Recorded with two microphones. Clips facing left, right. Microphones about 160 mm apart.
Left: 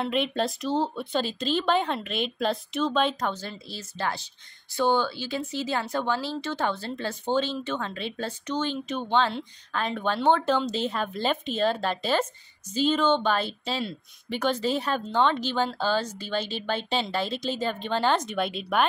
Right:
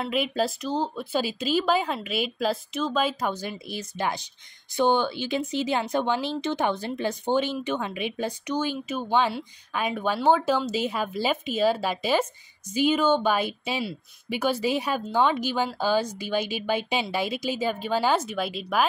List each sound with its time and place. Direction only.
0.0 s speech: 5° right (ahead or behind)